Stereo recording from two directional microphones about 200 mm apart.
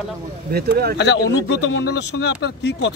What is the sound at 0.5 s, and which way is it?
Speech, 50° right (ahead or behind).